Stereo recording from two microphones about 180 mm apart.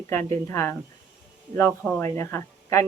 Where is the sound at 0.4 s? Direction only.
15° left (ahead or behind).